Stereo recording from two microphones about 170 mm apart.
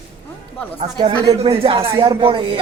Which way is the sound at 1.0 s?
25° right (ahead or behind).